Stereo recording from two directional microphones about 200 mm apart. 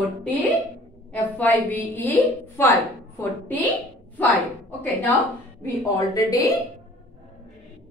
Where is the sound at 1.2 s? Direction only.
10° left (ahead or behind).